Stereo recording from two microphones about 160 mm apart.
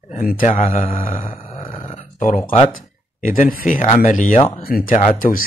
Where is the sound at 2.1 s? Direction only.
55° left (ahead or behind).